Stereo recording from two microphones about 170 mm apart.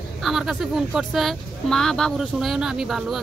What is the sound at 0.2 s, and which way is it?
Speech, centre (ahead or behind).